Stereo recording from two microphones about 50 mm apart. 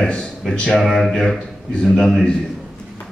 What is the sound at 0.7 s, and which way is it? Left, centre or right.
Speech, centre.